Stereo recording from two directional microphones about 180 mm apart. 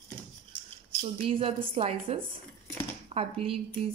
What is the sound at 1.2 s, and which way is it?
Speech, 30° right (ahead or behind).